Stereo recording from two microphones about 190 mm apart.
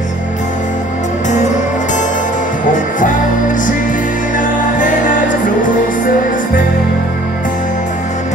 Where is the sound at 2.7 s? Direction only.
45° left (ahead or behind).